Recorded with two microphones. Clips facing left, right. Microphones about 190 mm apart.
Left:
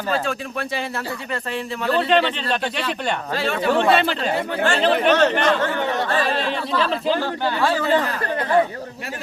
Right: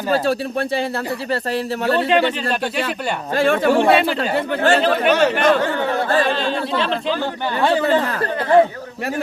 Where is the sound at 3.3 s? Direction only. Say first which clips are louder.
Right 8 dB; 50° right (ahead or behind).